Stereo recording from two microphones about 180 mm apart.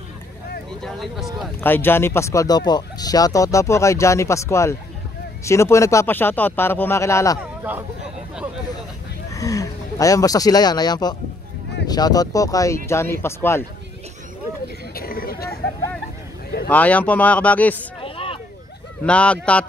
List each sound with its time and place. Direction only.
0.8 s speech: centre (ahead or behind)
1.6 s speech: 10° left (ahead or behind)
9.3 s speech: 20° left (ahead or behind)
15.0 s a sound: 55° left (ahead or behind)
16.6 s speech: 10° left (ahead or behind)
18.0 s a sound: 30° left (ahead or behind)
19.0 s speech: 5° left (ahead or behind)